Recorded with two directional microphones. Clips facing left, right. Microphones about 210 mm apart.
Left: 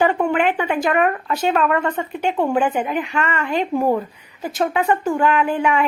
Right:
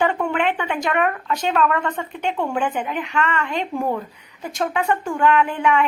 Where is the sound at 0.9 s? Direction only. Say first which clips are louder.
Left 3 dB; 40° left (ahead or behind).